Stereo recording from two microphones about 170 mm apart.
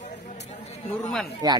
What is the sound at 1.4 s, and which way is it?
Speech, 20° right (ahead or behind).